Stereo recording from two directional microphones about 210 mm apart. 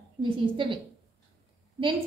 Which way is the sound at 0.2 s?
25° right (ahead or behind).